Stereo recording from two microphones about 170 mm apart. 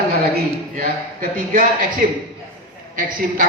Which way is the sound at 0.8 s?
60° right (ahead or behind).